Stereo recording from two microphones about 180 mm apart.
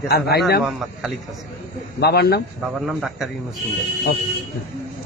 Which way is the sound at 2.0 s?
60° left (ahead or behind).